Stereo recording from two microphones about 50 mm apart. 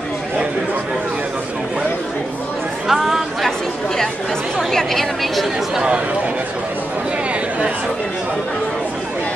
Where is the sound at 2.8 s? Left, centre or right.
Centre.